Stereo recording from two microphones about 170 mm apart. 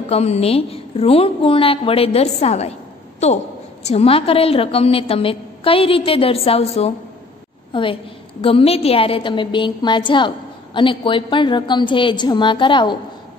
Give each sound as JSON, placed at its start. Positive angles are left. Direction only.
{"t": 0.1, "sound": "a woman's voice", "side_deg": 40}
{"t": 3.8, "sound": "a woman's voice", "side_deg": 35}